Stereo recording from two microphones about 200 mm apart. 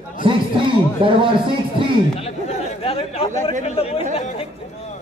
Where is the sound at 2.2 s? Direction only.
30° left (ahead or behind).